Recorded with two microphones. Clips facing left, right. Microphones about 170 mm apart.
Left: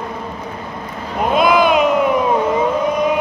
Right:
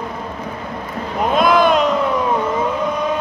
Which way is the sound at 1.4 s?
5° left (ahead or behind).